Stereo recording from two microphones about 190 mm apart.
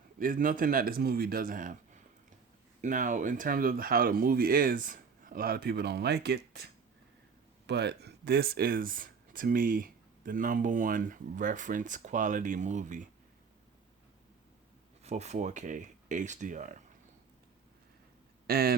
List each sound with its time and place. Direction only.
0.2 s speech: 45° right (ahead or behind)
7.7 s speech: 60° right (ahead or behind); by 13.1 s 40° right (ahead or behind)
15.0 s speech: 35° right (ahead or behind)
18.4 s speech: 55° right (ahead or behind)